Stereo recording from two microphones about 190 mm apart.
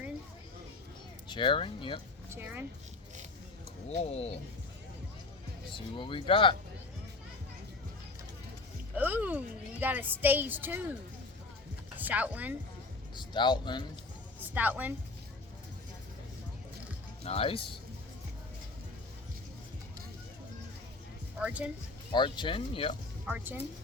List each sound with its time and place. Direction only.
1.3 s speech: 25° left (ahead or behind)
2.3 s a woman's voice: 10° right (ahead or behind)
3.8 s speech: 35° left (ahead or behind)
5.7 s speech: 25° left (ahead or behind)
9.0 s a woman's voice: 10° right (ahead or behind)
11.9 s speech: 10° right (ahead or behind)
13.1 s speech: 25° left (ahead or behind)
14.5 s a woman's voice: 10° right (ahead or behind)
17.2 s speech: 30° left (ahead or behind)
21.3 s speech: 5° right (ahead or behind)
22.1 s speech: 25° left (ahead or behind)
23.2 s a woman's voice: 10° right (ahead or behind)